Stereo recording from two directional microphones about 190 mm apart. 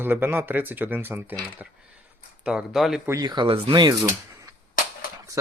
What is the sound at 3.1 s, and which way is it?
Speech, 20° right (ahead or behind).